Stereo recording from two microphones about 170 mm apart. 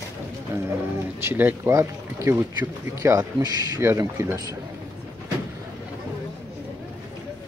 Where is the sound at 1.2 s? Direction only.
10° right (ahead or behind).